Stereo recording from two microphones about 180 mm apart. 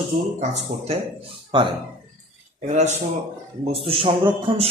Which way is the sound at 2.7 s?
40° right (ahead or behind).